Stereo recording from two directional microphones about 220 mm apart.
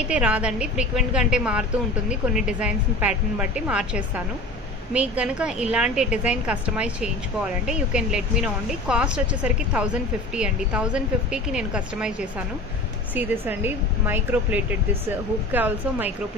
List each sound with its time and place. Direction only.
0.1 s speech: 5° right (ahead or behind)